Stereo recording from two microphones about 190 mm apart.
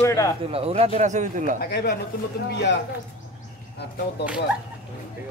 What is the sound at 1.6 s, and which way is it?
Speech, 55° left (ahead or behind).